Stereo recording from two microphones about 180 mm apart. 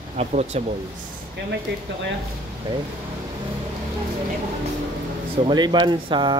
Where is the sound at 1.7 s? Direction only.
85° right.